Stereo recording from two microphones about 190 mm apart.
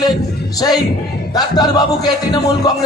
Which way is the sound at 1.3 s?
20° left (ahead or behind).